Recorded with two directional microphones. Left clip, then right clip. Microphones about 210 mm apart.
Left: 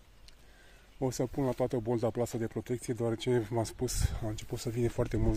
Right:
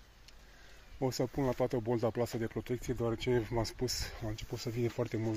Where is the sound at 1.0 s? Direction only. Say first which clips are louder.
Left 1 dB; 15° left (ahead or behind).